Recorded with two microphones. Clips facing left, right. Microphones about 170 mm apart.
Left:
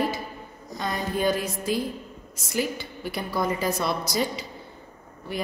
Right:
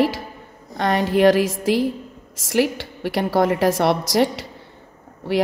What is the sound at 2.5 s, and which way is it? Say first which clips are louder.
A woman's voice: right 8 dB; 75° right (ahead or behind).